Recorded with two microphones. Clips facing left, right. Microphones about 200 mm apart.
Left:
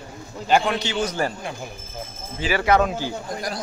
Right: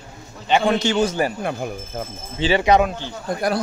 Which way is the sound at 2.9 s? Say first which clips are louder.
Left 3 dB; 10° left (ahead or behind).